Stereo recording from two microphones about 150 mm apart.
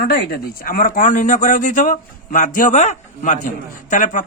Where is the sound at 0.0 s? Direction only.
80° left.